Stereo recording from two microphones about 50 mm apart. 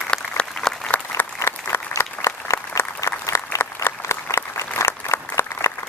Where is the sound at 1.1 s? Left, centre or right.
Left.